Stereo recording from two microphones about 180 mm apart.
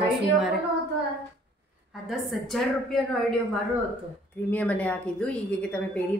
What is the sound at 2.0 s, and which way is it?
A woman's voice, centre (ahead or behind).